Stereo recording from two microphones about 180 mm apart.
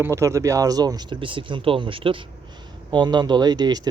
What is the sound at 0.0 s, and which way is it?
Speech, 15° right (ahead or behind).